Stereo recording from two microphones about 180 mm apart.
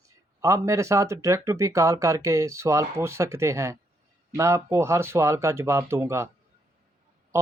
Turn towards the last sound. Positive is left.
turn(degrees=-15)  # may be behind; listen again after turning